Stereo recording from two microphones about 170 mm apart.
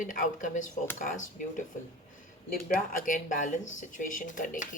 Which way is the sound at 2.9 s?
50° left (ahead or behind).